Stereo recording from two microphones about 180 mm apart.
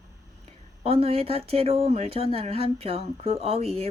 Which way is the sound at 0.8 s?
35° right (ahead or behind).